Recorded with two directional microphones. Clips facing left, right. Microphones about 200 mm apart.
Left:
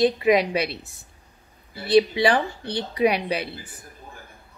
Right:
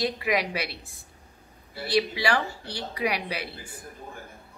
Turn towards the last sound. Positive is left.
turn(degrees=20)  # may be behind; listen again after turning